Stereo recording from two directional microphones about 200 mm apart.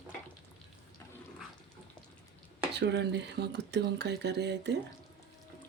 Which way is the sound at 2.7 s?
60° right (ahead or behind).